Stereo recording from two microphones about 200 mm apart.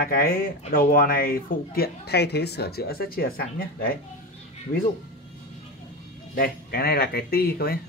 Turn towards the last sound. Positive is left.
turn(degrees=50)  # may be behind; listen again after turning